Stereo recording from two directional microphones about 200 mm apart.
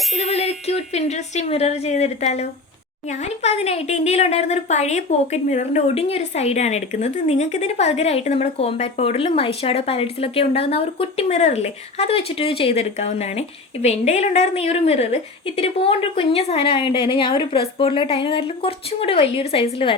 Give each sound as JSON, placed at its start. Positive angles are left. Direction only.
{"t": 0.2, "sound": "a woman's voice", "side_deg": 30}